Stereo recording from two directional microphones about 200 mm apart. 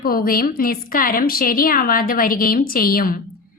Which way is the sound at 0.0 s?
45° left (ahead or behind).